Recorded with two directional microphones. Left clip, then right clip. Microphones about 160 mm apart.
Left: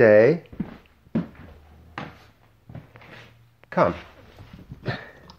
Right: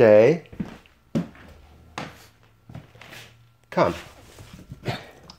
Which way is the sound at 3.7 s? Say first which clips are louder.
Left 1 dB; 10° right (ahead or behind).